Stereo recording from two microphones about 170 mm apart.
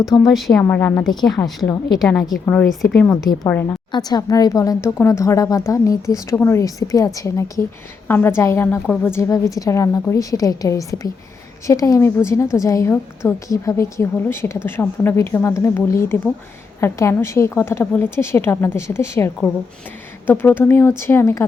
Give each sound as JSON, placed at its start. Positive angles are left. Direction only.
{"t": 0.3, "sound": "a woman's voice", "side_deg": 0}
{"t": 0.6, "sound": "a woman's voice", "side_deg": 10}
{"t": 2.0, "sound": "a woman's voice", "side_deg": 0}